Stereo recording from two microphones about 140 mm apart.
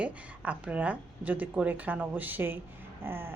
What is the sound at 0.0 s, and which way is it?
A woman's voice, 10° right (ahead or behind).